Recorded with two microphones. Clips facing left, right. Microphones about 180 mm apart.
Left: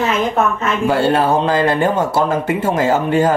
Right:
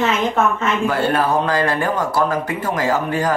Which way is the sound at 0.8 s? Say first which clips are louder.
Left 5 dB; 30° left (ahead or behind).